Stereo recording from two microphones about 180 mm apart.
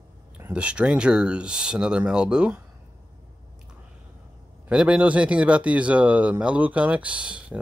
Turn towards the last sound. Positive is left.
turn(degrees=-5)  # may be behind; listen again after turning